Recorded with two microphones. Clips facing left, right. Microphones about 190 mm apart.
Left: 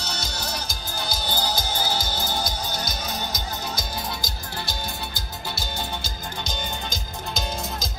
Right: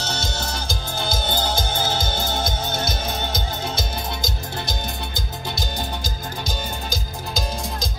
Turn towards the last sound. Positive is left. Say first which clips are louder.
# right 3 dB
turn(degrees=-15)  # may be behind; listen again after turning